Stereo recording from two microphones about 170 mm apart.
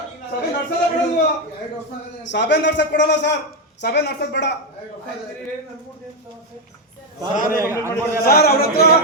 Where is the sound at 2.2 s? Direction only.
90° left.